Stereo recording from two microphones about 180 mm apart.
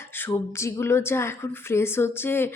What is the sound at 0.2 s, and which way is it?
Speech, 15° left (ahead or behind).